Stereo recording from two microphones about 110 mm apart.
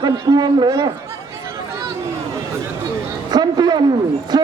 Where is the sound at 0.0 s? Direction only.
40° right (ahead or behind).